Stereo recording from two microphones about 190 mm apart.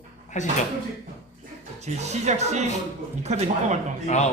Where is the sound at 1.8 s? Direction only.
35° right (ahead or behind).